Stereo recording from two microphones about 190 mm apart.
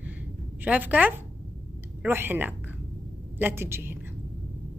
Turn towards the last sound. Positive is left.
turn(degrees=-10)  # may be behind; listen again after turning